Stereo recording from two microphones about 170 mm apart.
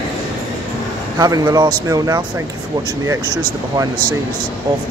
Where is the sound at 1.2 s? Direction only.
20° right (ahead or behind).